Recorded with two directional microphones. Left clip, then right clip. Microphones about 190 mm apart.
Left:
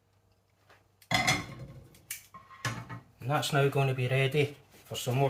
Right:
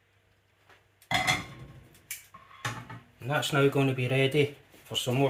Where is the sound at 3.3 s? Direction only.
25° right (ahead or behind).